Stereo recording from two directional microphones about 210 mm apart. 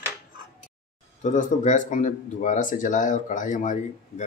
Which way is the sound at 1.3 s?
35° left (ahead or behind).